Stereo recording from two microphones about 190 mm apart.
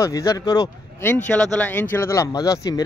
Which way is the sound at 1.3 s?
5° left (ahead or behind).